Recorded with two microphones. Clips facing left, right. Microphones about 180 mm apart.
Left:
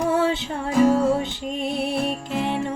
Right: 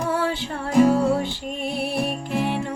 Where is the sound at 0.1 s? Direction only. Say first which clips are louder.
Left 3 dB; 20° left (ahead or behind).